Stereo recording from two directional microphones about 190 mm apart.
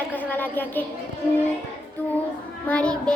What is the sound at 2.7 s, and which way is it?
Speech, 5° left (ahead or behind).